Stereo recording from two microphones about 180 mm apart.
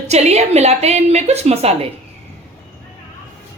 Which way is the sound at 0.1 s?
35° right (ahead or behind).